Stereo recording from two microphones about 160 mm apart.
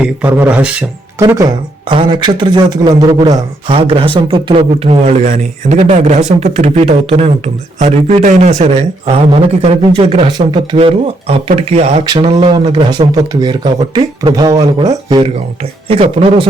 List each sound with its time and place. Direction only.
0.0 s speech: 10° right (ahead or behind)
1.2 s speech: 20° right (ahead or behind)
1.9 s speech: 30° right (ahead or behind)
5.2 s speech: 55° right (ahead or behind)
12.0 s speech: 30° right (ahead or behind)
15.9 s speech: 35° right (ahead or behind)